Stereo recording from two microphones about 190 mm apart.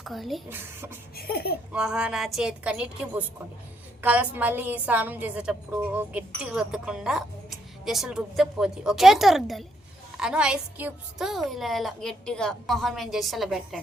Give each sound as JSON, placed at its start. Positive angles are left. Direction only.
{"t": 0.0, "sound": "speech", "side_deg": 0}
{"t": 0.5, "sound": "a woman's voice", "side_deg": -10}
{"t": 1.1, "sound": "speech", "side_deg": 55}
{"t": 1.7, "sound": "a woman's voice", "side_deg": -5}